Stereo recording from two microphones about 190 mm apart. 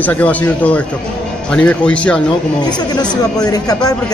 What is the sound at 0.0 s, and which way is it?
Speech, 10° left (ahead or behind).